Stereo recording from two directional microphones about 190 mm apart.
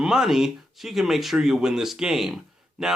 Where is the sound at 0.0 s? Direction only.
Centre (ahead or behind).